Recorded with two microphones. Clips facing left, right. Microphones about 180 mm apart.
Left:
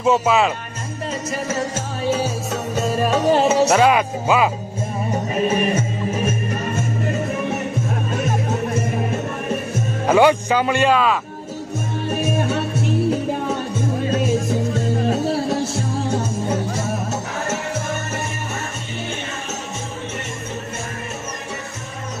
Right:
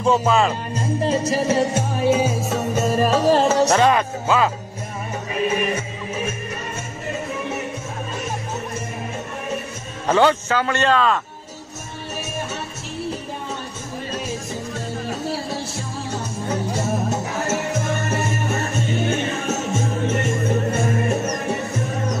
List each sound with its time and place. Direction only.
0.0 s speech: 5° left (ahead or behind)
1.0 s music: 30° right (ahead or behind)
2.0 s music: 5° right (ahead or behind); by 4.5 s 10° left (ahead or behind)
5.3 s music: 40° left (ahead or behind)
10.0 s a man's voice: 10° left (ahead or behind)
14.1 s music: 55° left (ahead or behind)